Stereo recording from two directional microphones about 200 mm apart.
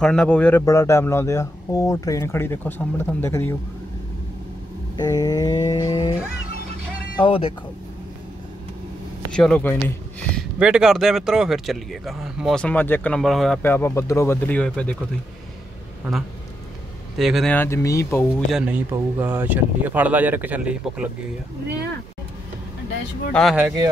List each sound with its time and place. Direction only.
0.0 s speech: 5° left (ahead or behind)
4.9 s a sound: 20° left (ahead or behind)
7.2 s a sound: 25° left (ahead or behind)
9.3 s speech: 5° left (ahead or behind)
10.6 s speech: 5° right (ahead or behind)
17.2 s speech: centre (ahead or behind); by 18.2 s 15° left (ahead or behind)
18.3 s speech: 5° right (ahead or behind)
23.3 s speech: 5° right (ahead or behind)